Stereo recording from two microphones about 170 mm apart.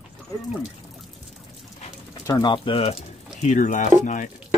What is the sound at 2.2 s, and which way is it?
Speech, 25° left (ahead or behind).